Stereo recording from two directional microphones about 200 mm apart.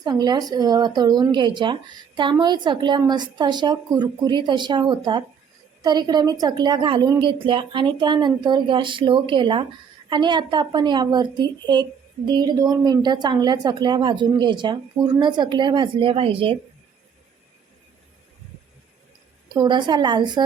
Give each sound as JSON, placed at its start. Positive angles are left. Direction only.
{"t": 0.0, "sound": "a woman's voice", "side_deg": -20}
{"t": 19.5, "sound": "a woman's voice", "side_deg": -25}